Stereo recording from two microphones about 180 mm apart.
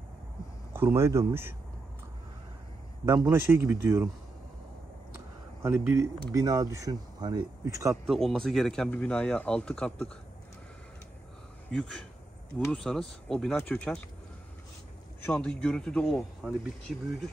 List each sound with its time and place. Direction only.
0.7 s speech: 15° right (ahead or behind)
3.3 s speech: 15° right (ahead or behind)
5.6 s speech: 15° right (ahead or behind)
8.1 s a man's voice: centre (ahead or behind)
11.7 s a man's voice: 5° left (ahead or behind)
15.2 s a man's voice: 5° left (ahead or behind)